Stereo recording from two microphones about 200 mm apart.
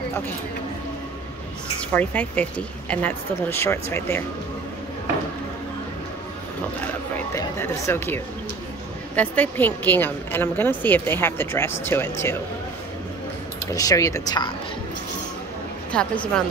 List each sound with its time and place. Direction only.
1.8 s speech: 5° left (ahead or behind)
7.3 s speech: 15° left (ahead or behind)
13.7 s speech: 15° left (ahead or behind)
15.9 s a woman's voice: 5° left (ahead or behind)